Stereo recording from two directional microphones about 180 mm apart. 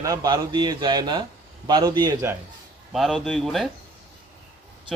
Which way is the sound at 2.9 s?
Centre (ahead or behind).